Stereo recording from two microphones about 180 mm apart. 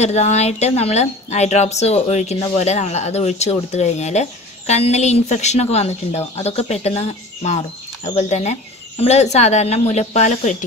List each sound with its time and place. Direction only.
0.0 s a woman's voice: 40° left (ahead or behind)